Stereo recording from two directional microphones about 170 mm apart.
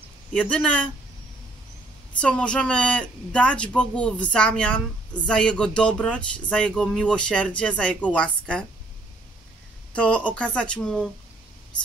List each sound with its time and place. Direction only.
0.3 s speech: 5° left (ahead or behind)
2.1 s speech: 5° left (ahead or behind)
9.9 s speech: 5° left (ahead or behind)